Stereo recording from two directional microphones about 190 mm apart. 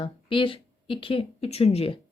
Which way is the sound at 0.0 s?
25° left (ahead or behind).